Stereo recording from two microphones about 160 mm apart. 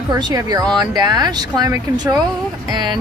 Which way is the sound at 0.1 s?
25° right (ahead or behind).